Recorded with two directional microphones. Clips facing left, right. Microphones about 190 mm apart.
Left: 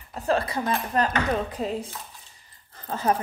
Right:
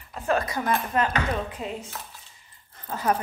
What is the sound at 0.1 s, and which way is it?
Speech, 35° left (ahead or behind).